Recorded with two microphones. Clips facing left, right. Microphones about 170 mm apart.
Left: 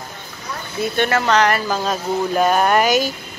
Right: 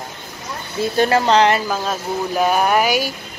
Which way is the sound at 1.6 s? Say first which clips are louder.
Left 1 dB; 5° right (ahead or behind).